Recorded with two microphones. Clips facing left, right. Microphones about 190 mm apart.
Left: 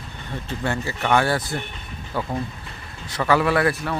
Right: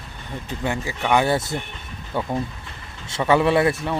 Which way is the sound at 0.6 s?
15° right (ahead or behind).